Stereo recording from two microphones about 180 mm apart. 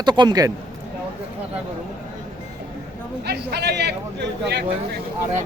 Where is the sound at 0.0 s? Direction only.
25° right (ahead or behind).